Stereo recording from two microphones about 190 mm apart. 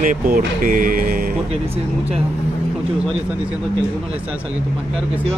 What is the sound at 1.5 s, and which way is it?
Speech, 35° right (ahead or behind).